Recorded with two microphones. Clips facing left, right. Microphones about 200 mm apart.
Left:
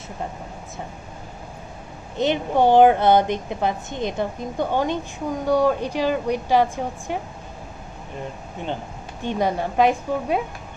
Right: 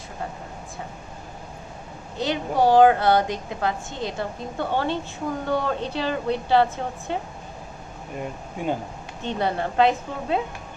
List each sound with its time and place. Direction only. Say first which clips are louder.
2.1 s a woman's voice: left 3 dB; 20° left (ahead or behind)
9.2 s speech: left 2 dB; 15° left (ahead or behind)